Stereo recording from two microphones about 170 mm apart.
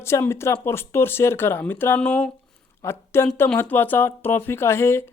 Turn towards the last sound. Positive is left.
turn(degrees=15)  # may be behind; listen again after turning